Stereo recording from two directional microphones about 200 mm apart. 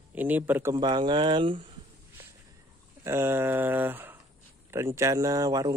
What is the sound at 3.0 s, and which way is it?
Speech, 10° right (ahead or behind).